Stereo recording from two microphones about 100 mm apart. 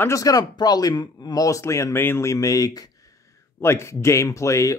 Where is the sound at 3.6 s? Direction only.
25° left (ahead or behind).